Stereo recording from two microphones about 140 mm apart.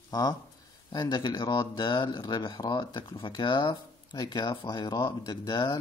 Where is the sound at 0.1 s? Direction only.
30° left (ahead or behind).